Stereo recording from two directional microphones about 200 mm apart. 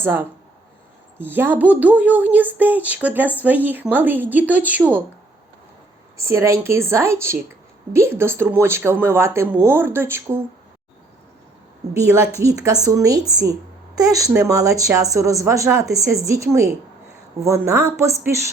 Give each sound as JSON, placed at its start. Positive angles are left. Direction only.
{"t": 0.0, "sound": "speech", "side_deg": -10}
{"t": 6.1, "sound": "speech", "side_deg": -15}
{"t": 12.4, "sound": "a woman's voice", "side_deg": -15}